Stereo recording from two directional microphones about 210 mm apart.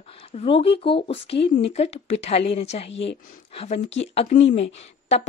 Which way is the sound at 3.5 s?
30° left (ahead or behind).